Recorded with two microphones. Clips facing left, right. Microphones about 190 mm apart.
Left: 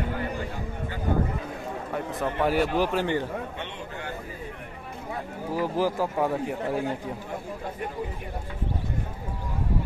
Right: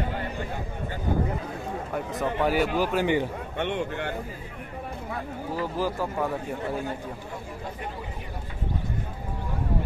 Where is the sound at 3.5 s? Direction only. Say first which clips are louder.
Right 8 dB; 60° right (ahead or behind).